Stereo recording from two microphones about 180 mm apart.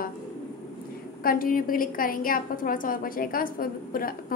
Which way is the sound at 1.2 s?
50° left (ahead or behind).